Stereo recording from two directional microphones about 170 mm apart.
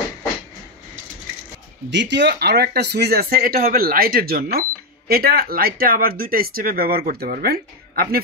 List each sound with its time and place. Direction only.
1.9 s speech: 90° right; by 8.2 s 65° right (ahead or behind)